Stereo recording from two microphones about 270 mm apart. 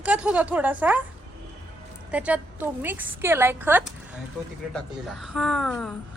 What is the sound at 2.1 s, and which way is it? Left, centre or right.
A woman's voice, centre.